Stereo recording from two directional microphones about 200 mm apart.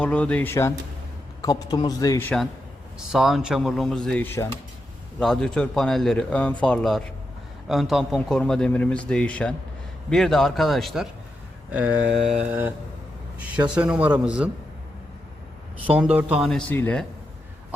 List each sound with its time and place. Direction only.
0.0 s a man's voice: 5° left (ahead or behind)
12.5 s a man's voice: 10° right (ahead or behind)
15.9 s a man's voice: 5° right (ahead or behind)